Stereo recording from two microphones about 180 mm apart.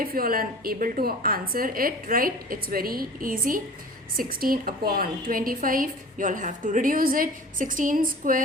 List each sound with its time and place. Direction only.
0.0 s a woman's voice: 55° right (ahead or behind)